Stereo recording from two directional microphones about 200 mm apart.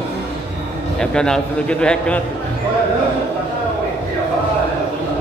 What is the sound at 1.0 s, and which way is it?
A man's voice, 5° left (ahead or behind).